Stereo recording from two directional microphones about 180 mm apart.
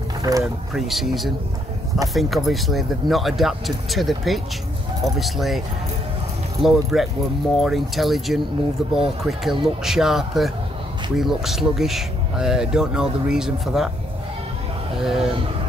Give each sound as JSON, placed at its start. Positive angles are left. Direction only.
{"t": 0.2, "sound": "speech", "side_deg": -20}
{"t": 0.7, "sound": "speech", "side_deg": 0}
{"t": 6.6, "sound": "speech", "side_deg": 0}
{"t": 15.0, "sound": "speech", "side_deg": 0}